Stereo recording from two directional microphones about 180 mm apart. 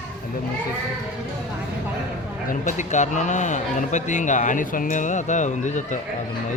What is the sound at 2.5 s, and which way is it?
Speech, 45° left (ahead or behind).